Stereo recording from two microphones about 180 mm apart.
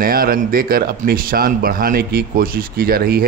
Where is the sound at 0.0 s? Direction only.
55° right (ahead or behind).